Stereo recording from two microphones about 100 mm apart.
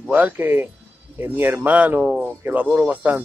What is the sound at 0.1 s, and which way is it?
A man's voice, 15° right (ahead or behind).